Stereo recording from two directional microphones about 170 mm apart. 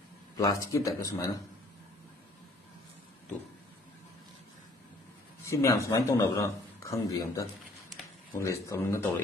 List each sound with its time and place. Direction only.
0.4 s speech: 20° left (ahead or behind)
5.4 s speech: 15° left (ahead or behind)